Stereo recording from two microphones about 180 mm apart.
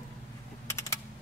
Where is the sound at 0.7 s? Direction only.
15° left (ahead or behind).